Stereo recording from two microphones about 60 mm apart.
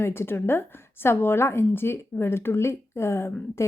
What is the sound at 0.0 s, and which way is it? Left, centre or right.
A woman's voice, left.